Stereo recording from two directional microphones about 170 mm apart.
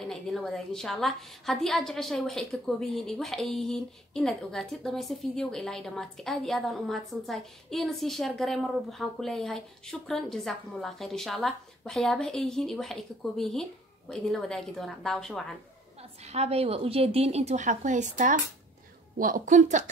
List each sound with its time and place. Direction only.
0.0 s a woman's voice: 5° left (ahead or behind)
16.0 s a woman's voice: 40° right (ahead or behind)